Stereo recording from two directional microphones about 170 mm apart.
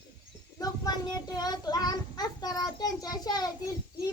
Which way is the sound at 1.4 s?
25° left (ahead or behind).